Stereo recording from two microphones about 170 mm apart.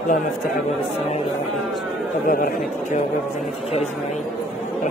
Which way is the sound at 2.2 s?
55° left (ahead or behind).